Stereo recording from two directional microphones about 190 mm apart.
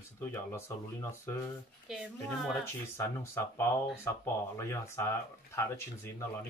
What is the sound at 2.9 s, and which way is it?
Speech, 15° left (ahead or behind).